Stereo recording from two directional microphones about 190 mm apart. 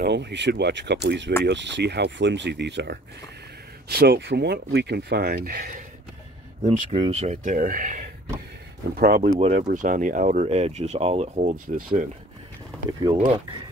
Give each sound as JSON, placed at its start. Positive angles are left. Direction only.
{"t": 0.0, "sound": "speech", "side_deg": -65}
{"t": 6.6, "sound": "speech", "side_deg": -35}
{"t": 13.0, "sound": "speech", "side_deg": -25}